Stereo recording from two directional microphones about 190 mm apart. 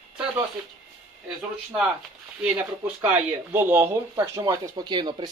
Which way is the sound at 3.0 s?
10° right (ahead or behind).